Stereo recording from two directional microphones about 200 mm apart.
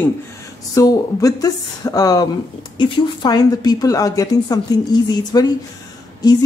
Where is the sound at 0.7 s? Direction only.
15° left (ahead or behind).